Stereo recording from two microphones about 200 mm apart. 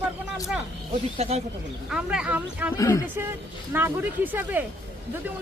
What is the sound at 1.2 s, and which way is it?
Speech, 30° right (ahead or behind).